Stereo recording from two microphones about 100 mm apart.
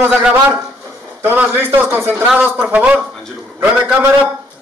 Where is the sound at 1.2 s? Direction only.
20° right (ahead or behind).